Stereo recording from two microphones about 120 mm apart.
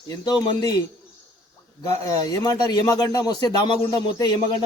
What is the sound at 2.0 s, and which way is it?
Speech, 30° left (ahead or behind).